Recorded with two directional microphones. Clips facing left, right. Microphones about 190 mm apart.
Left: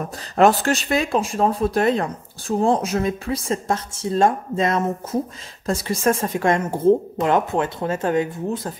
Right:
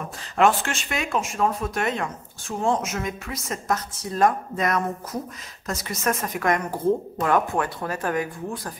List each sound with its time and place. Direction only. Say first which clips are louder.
0.4 s a woman's voice: left 5 dB; 40° left (ahead or behind)